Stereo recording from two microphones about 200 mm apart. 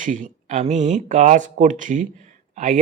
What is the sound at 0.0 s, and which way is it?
Speech, 40° right (ahead or behind).